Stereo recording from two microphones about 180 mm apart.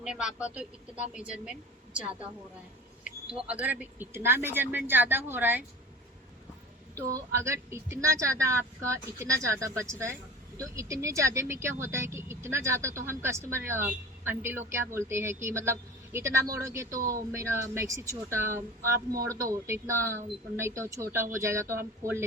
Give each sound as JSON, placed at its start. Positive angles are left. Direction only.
{"t": 0.0, "sound": "a woman's voice", "side_deg": -5}
{"t": 3.3, "sound": "a woman's voice", "side_deg": -5}
{"t": 7.1, "sound": "a woman's voice", "side_deg": -15}